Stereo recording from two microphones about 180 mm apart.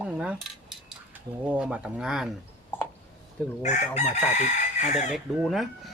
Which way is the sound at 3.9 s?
40° left (ahead or behind).